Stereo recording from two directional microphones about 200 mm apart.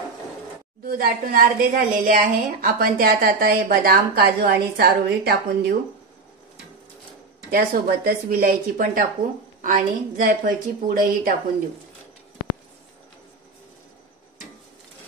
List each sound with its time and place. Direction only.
0.8 s a woman's voice: 45° right (ahead or behind)
7.5 s a woman's voice: 50° right (ahead or behind)